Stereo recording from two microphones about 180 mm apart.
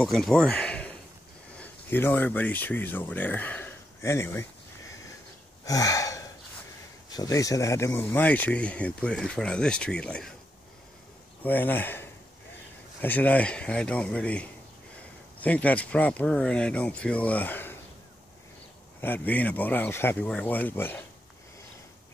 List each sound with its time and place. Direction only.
0.0 s speech: centre (ahead or behind)
5.7 s gasp: 20° left (ahead or behind)
7.1 s speech: 20° left (ahead or behind); by 10.3 s 5° left (ahead or behind)
11.4 s speech: 10° left (ahead or behind)
18.9 s speech: 10° left (ahead or behind)